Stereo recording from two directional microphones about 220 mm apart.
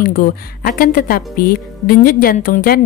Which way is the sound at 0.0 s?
40° left (ahead or behind).